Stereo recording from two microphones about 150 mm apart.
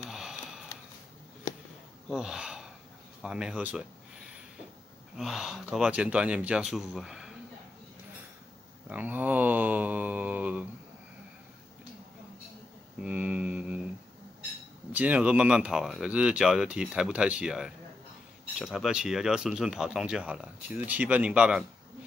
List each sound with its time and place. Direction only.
0.1 s a sound: 5° right (ahead or behind)
0.7 s a sound: 20° left (ahead or behind)
2.0 s gasp: 5° right (ahead or behind)
3.2 s speech: 5° right (ahead or behind)
5.1 s speech: 5° right (ahead or behind)
8.8 s speech: 10° right (ahead or behind)
13.0 s speech: 10° right (ahead or behind)
14.9 s speech: 10° right (ahead or behind)